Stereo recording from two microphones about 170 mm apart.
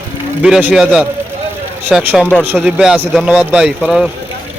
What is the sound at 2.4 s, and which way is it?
Speech, 5° right (ahead or behind).